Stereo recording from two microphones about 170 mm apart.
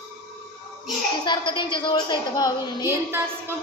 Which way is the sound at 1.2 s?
30° left (ahead or behind).